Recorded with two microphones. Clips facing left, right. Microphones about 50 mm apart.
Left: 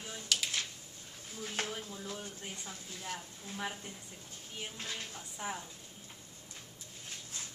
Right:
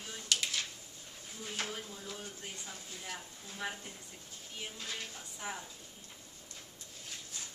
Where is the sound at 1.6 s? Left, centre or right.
Left.